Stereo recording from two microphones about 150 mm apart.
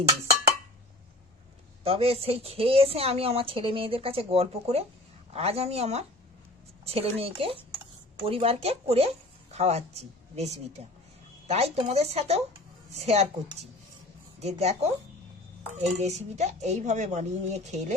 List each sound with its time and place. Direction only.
1.8 s a woman's voice: 40° right (ahead or behind)
14.3 s speech: 45° right (ahead or behind)